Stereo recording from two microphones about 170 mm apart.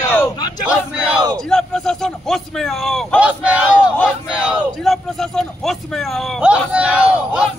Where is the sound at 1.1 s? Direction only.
25° right (ahead or behind).